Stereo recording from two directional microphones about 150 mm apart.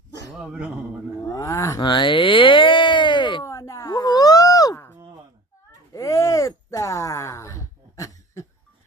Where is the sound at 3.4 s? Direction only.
20° left (ahead or behind).